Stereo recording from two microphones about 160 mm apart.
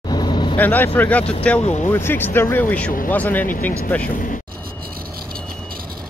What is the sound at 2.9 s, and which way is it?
Speech, 60° left (ahead or behind).